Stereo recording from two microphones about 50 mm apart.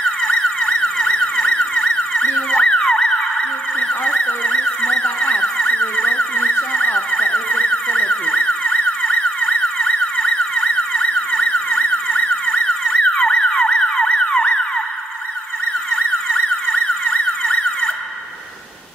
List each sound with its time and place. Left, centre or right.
0.0 s emergency vehicle: centre
3.8 s a sound: centre
4.2 s emergency vehicle: left
16.7 s emergency vehicle: left